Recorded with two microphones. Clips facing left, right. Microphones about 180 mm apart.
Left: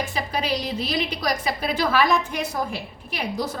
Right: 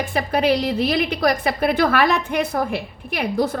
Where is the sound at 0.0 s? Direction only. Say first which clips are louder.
Right 7 dB; 55° right (ahead or behind).